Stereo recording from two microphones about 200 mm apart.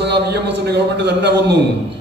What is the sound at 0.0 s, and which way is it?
A man's voice, 55° right (ahead or behind).